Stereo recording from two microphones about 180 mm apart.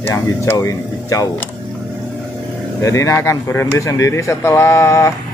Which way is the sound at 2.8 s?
15° left (ahead or behind).